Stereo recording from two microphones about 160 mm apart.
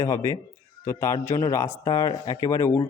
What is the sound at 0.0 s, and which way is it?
Speech, 20° left (ahead or behind).